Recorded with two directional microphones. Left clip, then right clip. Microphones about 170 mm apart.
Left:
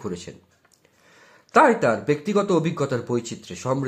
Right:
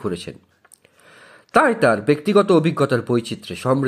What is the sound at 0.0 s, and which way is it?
A man's voice, 25° right (ahead or behind).